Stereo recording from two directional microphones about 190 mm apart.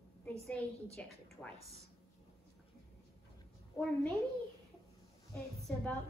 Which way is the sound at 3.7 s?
5° left (ahead or behind).